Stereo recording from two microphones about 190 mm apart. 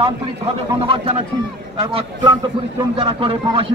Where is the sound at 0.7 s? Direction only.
25° right (ahead or behind).